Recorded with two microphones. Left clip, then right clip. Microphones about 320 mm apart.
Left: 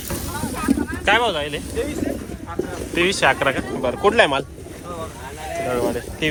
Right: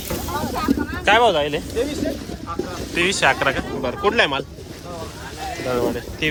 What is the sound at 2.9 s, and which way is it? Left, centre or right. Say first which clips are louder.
Speech: even; centre.